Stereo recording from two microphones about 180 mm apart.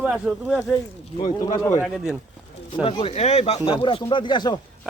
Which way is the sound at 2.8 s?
30° left (ahead or behind).